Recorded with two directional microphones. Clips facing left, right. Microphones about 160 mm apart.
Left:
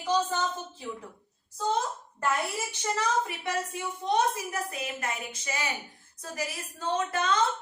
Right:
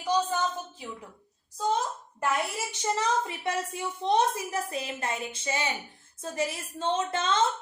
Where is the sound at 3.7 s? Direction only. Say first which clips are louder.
Right 3 dB; 30° right (ahead or behind).